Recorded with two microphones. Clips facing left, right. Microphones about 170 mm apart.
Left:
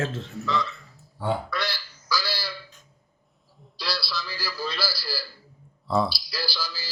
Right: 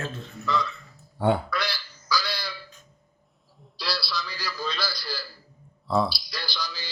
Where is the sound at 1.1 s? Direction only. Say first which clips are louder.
Right 4 dB; 60° right (ahead or behind).